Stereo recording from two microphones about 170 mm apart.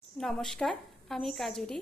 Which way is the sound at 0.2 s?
Centre (ahead or behind).